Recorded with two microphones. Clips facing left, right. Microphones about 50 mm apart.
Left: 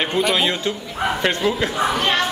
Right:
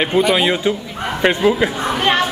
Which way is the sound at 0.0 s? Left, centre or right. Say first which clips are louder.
Right 4 dB; centre.